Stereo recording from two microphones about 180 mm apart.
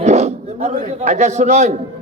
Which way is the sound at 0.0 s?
40° right (ahead or behind).